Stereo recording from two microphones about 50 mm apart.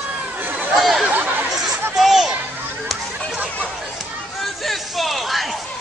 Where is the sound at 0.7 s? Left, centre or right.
Centre.